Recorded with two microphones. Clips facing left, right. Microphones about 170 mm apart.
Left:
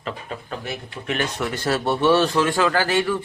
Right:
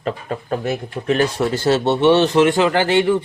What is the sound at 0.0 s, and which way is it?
Speech, 45° right (ahead or behind).